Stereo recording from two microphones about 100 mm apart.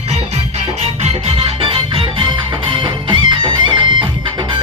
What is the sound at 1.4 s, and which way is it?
Music, 65° right (ahead or behind).